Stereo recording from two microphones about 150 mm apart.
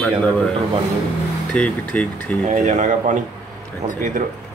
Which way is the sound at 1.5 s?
5° left (ahead or behind).